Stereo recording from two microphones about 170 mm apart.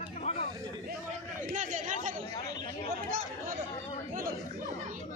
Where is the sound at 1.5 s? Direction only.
50° right (ahead or behind).